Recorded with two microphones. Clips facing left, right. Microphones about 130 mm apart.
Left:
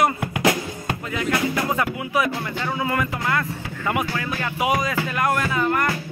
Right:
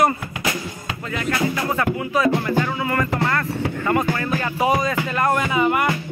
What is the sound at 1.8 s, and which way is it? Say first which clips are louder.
Speech: right 2 dB; 15° left (ahead or behind).